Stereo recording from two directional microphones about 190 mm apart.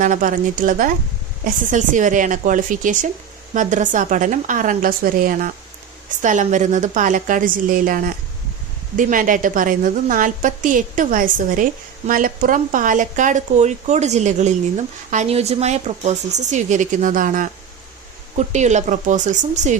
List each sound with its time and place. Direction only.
0.0 s a woman's voice: 45° right (ahead or behind)